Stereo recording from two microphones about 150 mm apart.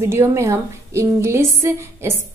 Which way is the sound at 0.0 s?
20° right (ahead or behind).